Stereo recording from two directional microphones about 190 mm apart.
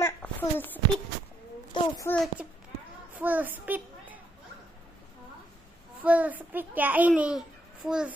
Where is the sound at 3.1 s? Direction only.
10° right (ahead or behind).